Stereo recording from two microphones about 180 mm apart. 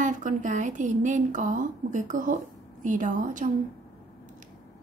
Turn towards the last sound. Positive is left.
turn(degrees=-45)  # may be behind; listen again after turning